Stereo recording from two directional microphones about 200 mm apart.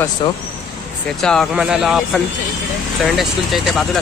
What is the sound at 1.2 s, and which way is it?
Speech, 5° left (ahead or behind).